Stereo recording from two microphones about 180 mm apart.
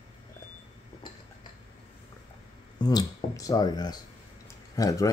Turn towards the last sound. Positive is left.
turn(degrees=20)  # may be behind; listen again after turning